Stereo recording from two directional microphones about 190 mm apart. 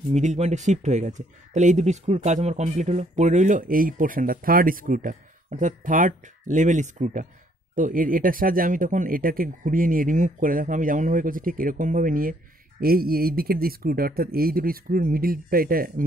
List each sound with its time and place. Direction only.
0.1 s speech: 35° right (ahead or behind)